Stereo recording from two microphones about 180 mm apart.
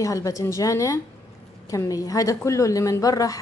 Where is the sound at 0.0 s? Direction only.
20° left (ahead or behind).